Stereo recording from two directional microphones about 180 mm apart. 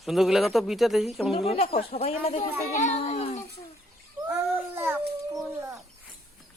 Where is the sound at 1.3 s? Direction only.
35° left (ahead or behind).